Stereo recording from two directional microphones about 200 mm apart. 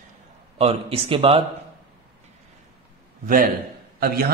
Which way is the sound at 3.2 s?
45° right (ahead or behind).